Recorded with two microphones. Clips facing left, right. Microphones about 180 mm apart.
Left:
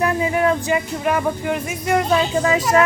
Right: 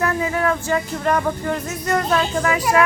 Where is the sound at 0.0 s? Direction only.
20° left (ahead or behind).